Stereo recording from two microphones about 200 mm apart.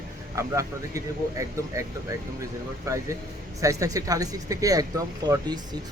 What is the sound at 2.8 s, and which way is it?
Speech, 15° right (ahead or behind).